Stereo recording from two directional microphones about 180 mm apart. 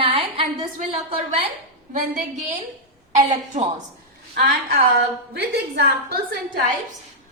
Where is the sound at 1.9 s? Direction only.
45° right (ahead or behind).